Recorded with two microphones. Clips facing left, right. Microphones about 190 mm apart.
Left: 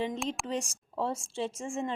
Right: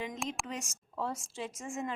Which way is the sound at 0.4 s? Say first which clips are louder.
Left 7 dB; 30° left (ahead or behind).